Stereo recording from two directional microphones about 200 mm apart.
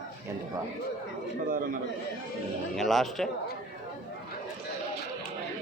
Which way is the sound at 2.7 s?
Centre (ahead or behind).